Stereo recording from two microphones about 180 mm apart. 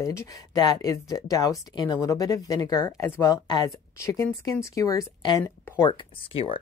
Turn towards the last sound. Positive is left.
turn(degrees=30)  # may be behind; listen again after turning